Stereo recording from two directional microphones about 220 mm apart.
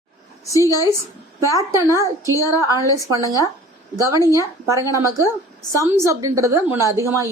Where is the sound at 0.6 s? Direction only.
15° left (ahead or behind).